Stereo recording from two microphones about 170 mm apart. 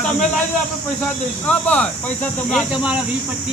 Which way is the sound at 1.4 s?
10° left (ahead or behind).